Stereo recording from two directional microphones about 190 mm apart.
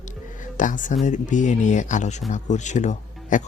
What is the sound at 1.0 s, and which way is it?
A man's voice, 40° left (ahead or behind).